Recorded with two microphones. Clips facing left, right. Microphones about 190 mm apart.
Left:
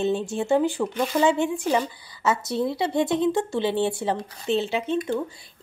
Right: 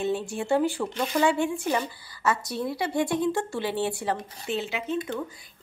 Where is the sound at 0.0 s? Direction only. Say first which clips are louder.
Left 4 dB; 25° left (ahead or behind).